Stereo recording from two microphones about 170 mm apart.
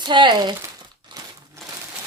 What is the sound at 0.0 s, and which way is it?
Crumpling, 25° right (ahead or behind).